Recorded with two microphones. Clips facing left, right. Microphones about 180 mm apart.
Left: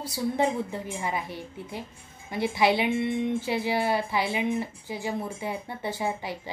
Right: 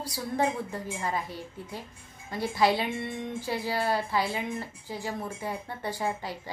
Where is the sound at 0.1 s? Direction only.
20° left (ahead or behind).